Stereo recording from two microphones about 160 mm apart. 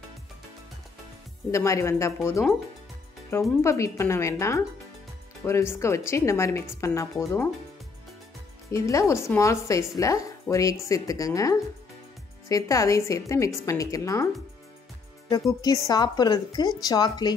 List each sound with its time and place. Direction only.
1.5 s a woman's voice: 20° left (ahead or behind)
8.7 s speech: 20° left (ahead or behind)
15.6 s speech: 25° left (ahead or behind)